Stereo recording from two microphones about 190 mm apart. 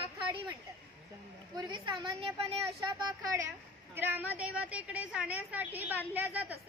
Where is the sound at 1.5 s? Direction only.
20° right (ahead or behind).